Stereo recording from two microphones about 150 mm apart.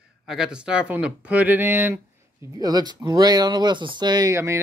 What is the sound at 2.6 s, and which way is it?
Speech, 25° right (ahead or behind).